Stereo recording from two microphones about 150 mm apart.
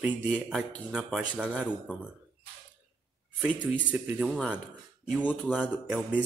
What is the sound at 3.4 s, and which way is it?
Music, 10° right (ahead or behind).